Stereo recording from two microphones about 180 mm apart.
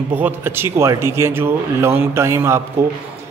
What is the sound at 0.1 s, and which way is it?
A man's voice, 10° right (ahead or behind).